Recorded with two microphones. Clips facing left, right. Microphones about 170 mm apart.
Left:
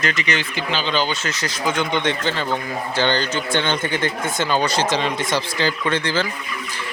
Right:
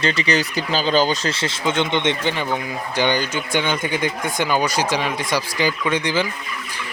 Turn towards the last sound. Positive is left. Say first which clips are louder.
# right 1 dB
turn(degrees=-15)  # may be behind; listen again after turning